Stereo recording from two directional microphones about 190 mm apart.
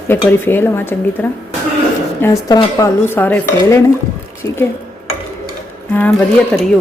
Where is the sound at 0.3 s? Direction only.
10° left (ahead or behind).